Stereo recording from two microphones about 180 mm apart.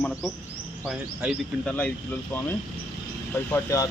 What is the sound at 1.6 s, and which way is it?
Speech, 5° left (ahead or behind).